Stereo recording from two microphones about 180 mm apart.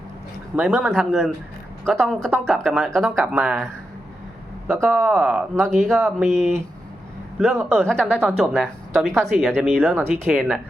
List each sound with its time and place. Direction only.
0.5 s speech: 5° right (ahead or behind)
4.7 s speech: 5° right (ahead or behind)
6.2 s speech: 40° right (ahead or behind)
7.3 s speech: 5° right (ahead or behind)